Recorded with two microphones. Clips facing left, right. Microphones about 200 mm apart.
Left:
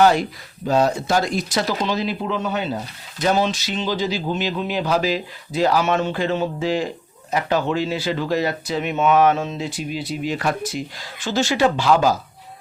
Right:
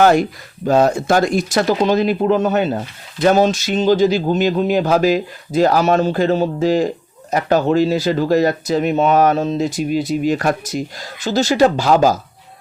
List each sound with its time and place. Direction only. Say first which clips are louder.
0.0 s speech: right 3 dB; 50° right (ahead or behind)